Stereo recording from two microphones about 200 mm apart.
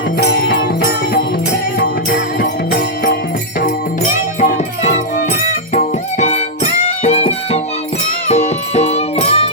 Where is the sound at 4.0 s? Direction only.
35° left (ahead or behind).